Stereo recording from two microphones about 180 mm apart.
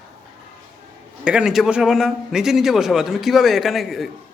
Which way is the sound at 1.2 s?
5° right (ahead or behind).